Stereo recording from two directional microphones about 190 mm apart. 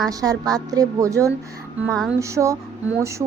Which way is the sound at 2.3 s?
15° right (ahead or behind).